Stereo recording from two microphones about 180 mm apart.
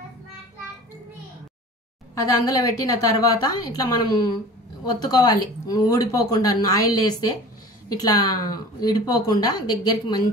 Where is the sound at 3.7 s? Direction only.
20° left (ahead or behind).